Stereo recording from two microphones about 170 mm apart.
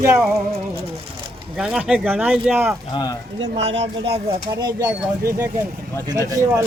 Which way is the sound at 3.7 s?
40° right (ahead or behind).